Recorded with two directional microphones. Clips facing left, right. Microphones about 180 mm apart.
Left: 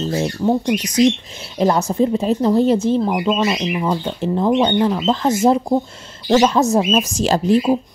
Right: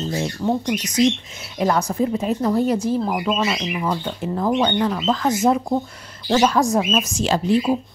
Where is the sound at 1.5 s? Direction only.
25° left (ahead or behind).